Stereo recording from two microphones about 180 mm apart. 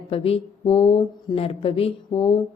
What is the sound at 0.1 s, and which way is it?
A woman's voice, 35° left (ahead or behind).